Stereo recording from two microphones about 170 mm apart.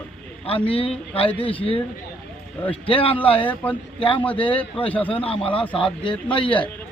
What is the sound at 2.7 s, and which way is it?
Speech, 35° left (ahead or behind).